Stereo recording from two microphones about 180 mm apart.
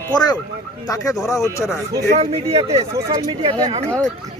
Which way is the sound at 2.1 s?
35° right (ahead or behind).